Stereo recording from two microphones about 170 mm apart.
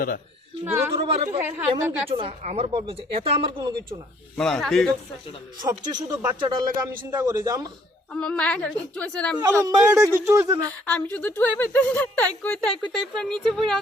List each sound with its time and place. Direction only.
0.6 s speech: 15° right (ahead or behind)
1.0 s a woman's voice: 35° right (ahead or behind)
1.4 s speech: 10° right (ahead or behind)
1.7 s a woman's voice: 30° right (ahead or behind)
4.4 s speech: 5° left (ahead or behind)
5.6 s speech: 25° right (ahead or behind)
8.1 s a woman's voice: 5° left (ahead or behind)
9.6 s speech: 15° right (ahead or behind)
10.8 s a woman's voice: 10° left (ahead or behind)